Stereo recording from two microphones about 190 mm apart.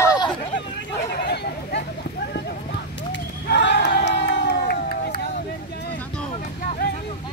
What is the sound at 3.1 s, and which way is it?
Crowd, 65° left (ahead or behind).